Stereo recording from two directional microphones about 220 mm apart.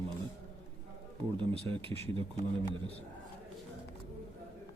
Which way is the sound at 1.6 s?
25° right (ahead or behind).